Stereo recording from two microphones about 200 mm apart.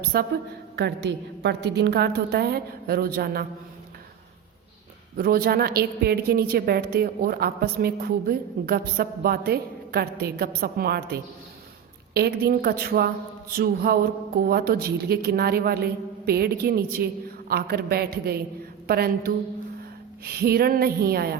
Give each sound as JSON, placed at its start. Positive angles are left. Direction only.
{"t": 0.1, "sound": "a woman's voice", "side_deg": -50}
{"t": 5.1, "sound": "a woman's voice", "side_deg": -50}